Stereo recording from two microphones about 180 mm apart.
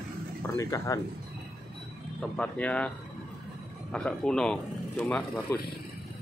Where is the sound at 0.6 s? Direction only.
20° left (ahead or behind).